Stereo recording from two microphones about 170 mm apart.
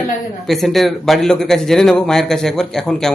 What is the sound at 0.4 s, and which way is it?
Speech, centre (ahead or behind).